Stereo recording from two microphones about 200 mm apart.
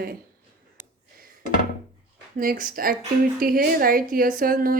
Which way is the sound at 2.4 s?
45° right (ahead or behind).